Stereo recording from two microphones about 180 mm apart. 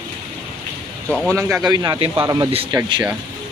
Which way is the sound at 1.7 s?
20° right (ahead or behind).